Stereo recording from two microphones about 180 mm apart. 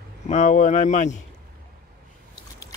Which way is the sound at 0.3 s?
40° left (ahead or behind).